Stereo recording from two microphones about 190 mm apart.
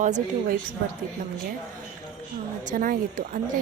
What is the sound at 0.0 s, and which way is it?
Speech, 40° right (ahead or behind).